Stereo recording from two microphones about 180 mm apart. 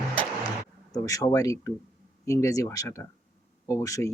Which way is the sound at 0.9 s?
20° left (ahead or behind).